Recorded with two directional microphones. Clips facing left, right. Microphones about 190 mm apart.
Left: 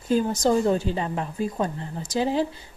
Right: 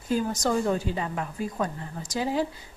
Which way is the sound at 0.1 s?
25° left (ahead or behind).